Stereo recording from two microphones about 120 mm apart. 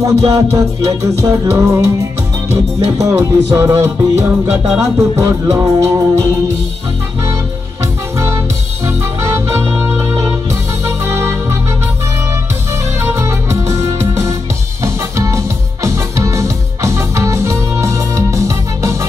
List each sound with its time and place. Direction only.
0.0 s music: 25° right (ahead or behind)
8.8 s music: 25° right (ahead or behind)
13.0 s music: 25° right (ahead or behind)